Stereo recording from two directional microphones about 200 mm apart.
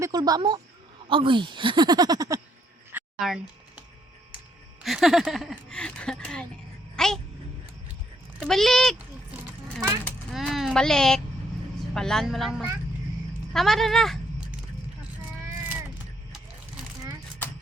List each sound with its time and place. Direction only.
0.0 s speech: 20° right (ahead or behind)
2.9 s a sound: 5° right (ahead or behind)
4.8 s speech: centre (ahead or behind)
6.9 s a sound: centre (ahead or behind)
8.4 s a woman's voice: centre (ahead or behind)
10.3 s a woman's voice: centre (ahead or behind)